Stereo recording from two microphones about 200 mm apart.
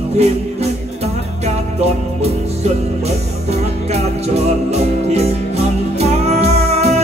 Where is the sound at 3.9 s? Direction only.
30° right (ahead or behind).